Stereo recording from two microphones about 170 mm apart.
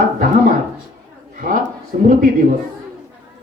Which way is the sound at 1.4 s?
55° right (ahead or behind).